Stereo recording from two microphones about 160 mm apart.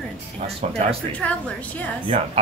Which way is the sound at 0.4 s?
40° right (ahead or behind).